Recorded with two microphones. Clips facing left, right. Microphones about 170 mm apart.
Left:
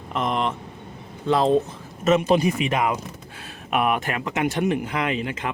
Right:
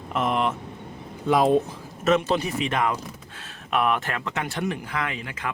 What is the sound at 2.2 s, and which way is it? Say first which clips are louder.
Speech: left 5 dB; 15° left (ahead or behind).